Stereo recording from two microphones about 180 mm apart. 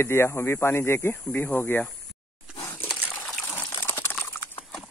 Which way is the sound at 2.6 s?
10° left (ahead or behind).